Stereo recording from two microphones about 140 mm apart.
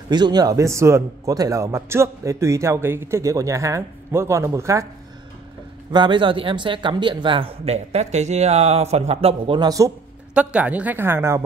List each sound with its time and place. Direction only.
0.1 s speech: 30° right (ahead or behind)
5.9 s speech: 35° right (ahead or behind)
9.6 s speech: 25° right (ahead or behind)
10.3 s a woman's voice: 10° right (ahead or behind)